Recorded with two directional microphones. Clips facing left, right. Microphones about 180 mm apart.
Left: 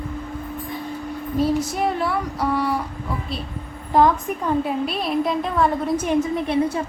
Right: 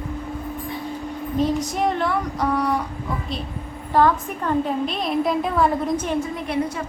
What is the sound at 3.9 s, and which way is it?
A woman's voice, 15° left (ahead or behind).